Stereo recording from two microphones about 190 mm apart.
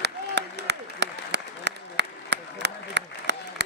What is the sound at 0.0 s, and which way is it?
Applause, 65° right (ahead or behind).